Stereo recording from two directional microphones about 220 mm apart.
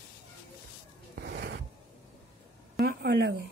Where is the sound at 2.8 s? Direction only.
45° right (ahead or behind).